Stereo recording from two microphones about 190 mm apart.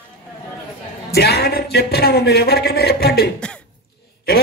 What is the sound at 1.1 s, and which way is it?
A man's voice, 60° left (ahead or behind).